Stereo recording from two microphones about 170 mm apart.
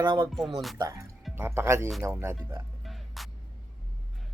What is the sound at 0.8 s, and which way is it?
Speech, 20° right (ahead or behind).